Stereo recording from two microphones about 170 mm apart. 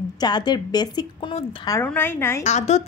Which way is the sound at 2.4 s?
40° left (ahead or behind).